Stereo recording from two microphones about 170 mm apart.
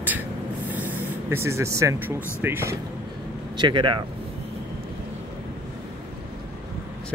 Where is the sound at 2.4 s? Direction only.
15° right (ahead or behind).